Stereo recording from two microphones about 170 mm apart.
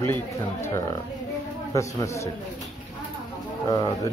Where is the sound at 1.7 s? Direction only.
15° left (ahead or behind).